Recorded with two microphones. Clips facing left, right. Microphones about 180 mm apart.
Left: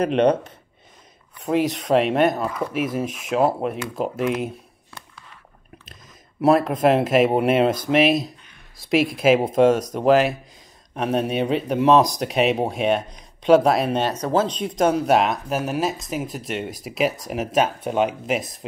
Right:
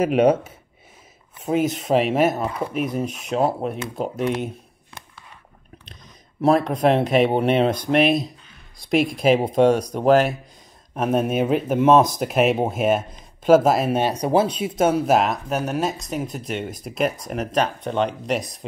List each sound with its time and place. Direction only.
0.0 s speech: 5° right (ahead or behind)
2.4 s speech: 25° right (ahead or behind)
2.7 s speech: centre (ahead or behind)
6.4 s speech: 5° left (ahead or behind)